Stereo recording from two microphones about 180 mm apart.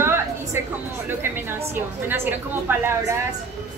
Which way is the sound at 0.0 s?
15° right (ahead or behind).